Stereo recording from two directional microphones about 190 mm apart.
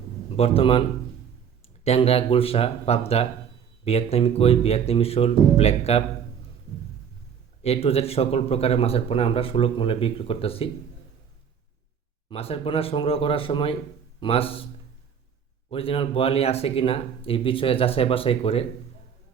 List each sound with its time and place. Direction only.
0.3 s speech: 30° left (ahead or behind)
7.6 s speech: 30° left (ahead or behind)
12.3 s speech: 30° left (ahead or behind)
15.7 s speech: 30° left (ahead or behind)